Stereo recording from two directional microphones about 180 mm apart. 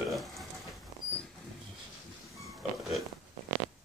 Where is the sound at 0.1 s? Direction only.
Centre (ahead or behind).